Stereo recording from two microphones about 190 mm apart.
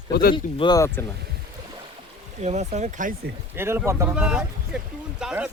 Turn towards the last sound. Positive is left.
turn(degrees=-5)  # may be behind; listen again after turning